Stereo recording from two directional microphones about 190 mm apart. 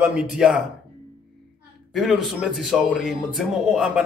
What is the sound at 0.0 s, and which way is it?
Speech, 5° right (ahead or behind).